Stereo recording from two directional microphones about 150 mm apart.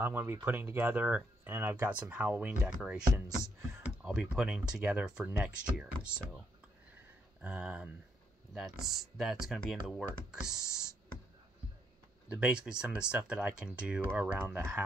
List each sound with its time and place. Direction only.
0.0 s speech: 15° right (ahead or behind)
7.4 s speech: 5° right (ahead or behind)
12.3 s speech: 5° right (ahead or behind)